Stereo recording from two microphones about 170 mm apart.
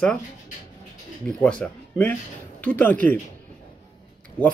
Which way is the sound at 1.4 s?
5° left (ahead or behind).